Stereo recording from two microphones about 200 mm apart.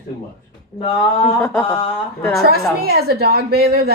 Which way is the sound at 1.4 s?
10° left (ahead or behind).